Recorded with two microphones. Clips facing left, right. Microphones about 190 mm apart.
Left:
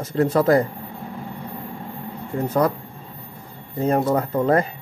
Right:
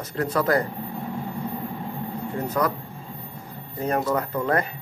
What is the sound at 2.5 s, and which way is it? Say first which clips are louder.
Speech: left 5 dB; 30° left (ahead or behind).